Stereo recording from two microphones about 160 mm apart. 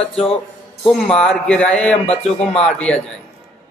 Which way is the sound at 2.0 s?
40° left (ahead or behind).